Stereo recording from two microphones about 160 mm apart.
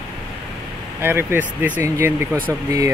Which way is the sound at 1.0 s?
15° right (ahead or behind).